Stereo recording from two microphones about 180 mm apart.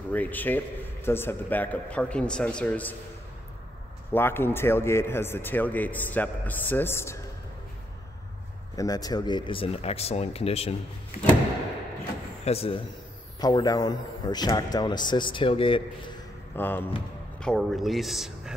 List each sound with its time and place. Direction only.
0.1 s speech: 10° left (ahead or behind)
4.1 s speech: 10° left (ahead or behind)
8.7 s speech: 20° left (ahead or behind)
12.4 s speech: 35° left (ahead or behind)
13.4 s speech: 20° left (ahead or behind)
16.5 s speech: 10° left (ahead or behind)